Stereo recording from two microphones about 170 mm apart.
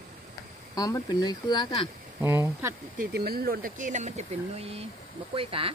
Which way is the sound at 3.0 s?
65° right (ahead or behind).